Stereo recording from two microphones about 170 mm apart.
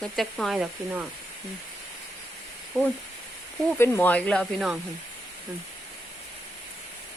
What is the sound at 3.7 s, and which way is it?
Speech, 15° left (ahead or behind).